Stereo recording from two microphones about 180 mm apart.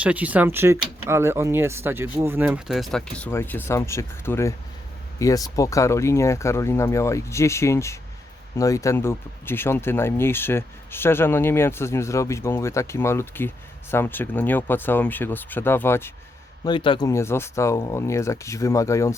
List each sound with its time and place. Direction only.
0.0 s speech: 10° right (ahead or behind); by 16.1 s 15° left (ahead or behind)
16.6 s speech: 25° left (ahead or behind)